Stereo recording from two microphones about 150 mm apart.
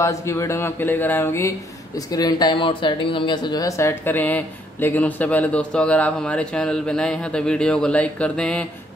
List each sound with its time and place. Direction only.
0.0 s speech: 20° left (ahead or behind)